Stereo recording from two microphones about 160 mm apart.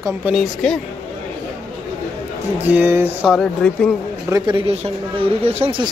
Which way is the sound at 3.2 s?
5° left (ahead or behind).